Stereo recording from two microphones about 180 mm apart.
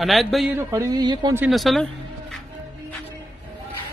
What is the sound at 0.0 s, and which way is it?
Speech, centre (ahead or behind).